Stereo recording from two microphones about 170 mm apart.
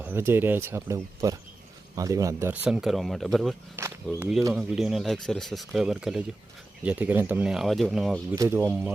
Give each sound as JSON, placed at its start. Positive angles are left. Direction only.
{"t": 0.0, "sound": "speech", "side_deg": -15}
{"t": 2.5, "sound": "speech", "side_deg": -5}
{"t": 3.8, "sound": "speech", "side_deg": -15}
{"t": 4.5, "sound": "speech", "side_deg": -5}
{"t": 8.4, "sound": "speech", "side_deg": -15}